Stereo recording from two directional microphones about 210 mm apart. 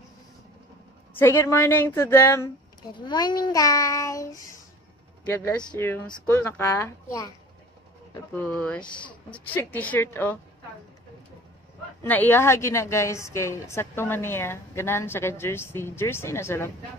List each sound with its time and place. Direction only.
1.1 s a woman's voice: 10° left (ahead or behind)
8.4 s speech: 5° left (ahead or behind)
8.9 s a woman's voice: 20° left (ahead or behind)
9.5 s a woman's voice: 10° left (ahead or behind)
12.0 s a woman's voice: 10° left (ahead or behind)